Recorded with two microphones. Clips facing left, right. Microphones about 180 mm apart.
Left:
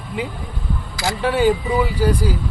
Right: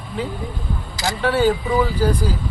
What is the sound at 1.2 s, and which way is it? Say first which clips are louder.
Speech: left 1 dB; 15° left (ahead or behind).